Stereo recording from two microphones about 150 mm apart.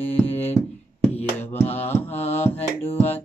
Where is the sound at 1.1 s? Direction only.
45° left (ahead or behind).